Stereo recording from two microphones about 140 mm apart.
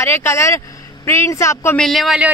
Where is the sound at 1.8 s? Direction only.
Centre (ahead or behind).